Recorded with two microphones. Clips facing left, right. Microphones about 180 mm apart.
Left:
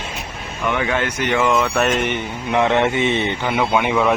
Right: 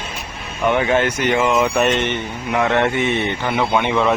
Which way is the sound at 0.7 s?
30° right (ahead or behind).